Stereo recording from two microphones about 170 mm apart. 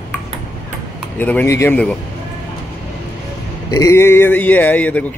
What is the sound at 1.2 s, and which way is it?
Speech, 10° left (ahead or behind).